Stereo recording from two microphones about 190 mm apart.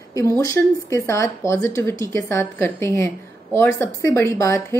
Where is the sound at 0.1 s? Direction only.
15° left (ahead or behind).